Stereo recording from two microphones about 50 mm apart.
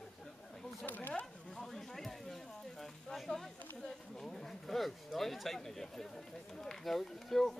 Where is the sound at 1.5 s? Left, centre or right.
Centre.